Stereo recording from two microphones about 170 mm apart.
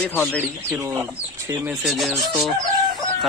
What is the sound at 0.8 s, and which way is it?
Speech, 15° right (ahead or behind).